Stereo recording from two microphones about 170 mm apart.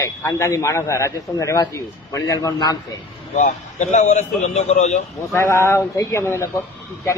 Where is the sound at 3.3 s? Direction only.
45° left (ahead or behind).